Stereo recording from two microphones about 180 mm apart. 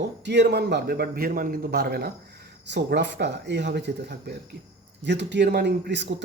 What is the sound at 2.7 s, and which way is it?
Speech, 70° right (ahead or behind).